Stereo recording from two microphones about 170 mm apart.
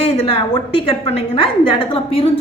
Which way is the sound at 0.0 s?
35° left (ahead or behind).